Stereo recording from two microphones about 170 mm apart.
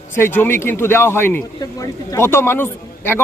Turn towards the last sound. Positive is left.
turn(degrees=15)  # may be behind; listen again after turning